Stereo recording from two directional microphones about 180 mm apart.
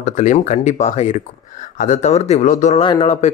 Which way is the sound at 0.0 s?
45° left (ahead or behind).